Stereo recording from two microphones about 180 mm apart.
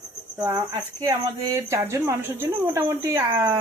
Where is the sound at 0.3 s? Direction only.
20° right (ahead or behind).